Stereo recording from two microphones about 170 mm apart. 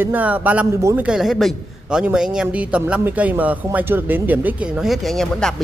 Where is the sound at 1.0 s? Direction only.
5° right (ahead or behind).